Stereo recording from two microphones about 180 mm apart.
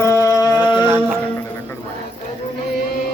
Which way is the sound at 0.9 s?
10° right (ahead or behind).